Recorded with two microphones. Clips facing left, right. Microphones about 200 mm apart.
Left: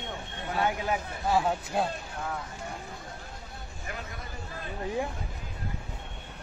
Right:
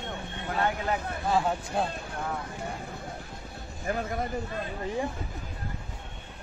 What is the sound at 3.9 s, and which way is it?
Speech, 35° right (ahead or behind).